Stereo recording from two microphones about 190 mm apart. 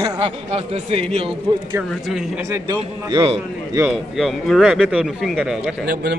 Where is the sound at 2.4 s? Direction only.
15° right (ahead or behind).